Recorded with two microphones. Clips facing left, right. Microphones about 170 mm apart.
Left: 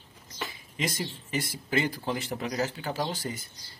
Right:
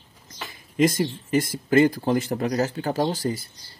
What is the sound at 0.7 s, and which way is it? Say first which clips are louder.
Speech: right 12 dB; 45° right (ahead or behind).